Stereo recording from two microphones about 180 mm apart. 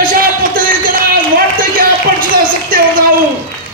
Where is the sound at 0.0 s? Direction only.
50° right (ahead or behind).